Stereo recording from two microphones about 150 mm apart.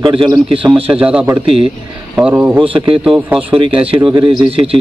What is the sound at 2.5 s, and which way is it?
A man's voice, 35° right (ahead or behind).